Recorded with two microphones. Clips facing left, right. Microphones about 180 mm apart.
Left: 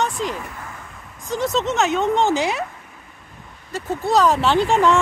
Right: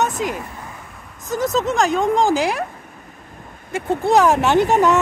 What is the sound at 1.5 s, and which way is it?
Speech, centre (ahead or behind).